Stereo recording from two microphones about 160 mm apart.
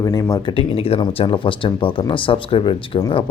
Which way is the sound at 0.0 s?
20° left (ahead or behind).